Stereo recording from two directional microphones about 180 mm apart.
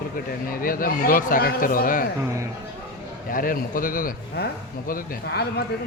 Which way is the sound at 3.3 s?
55° left (ahead or behind).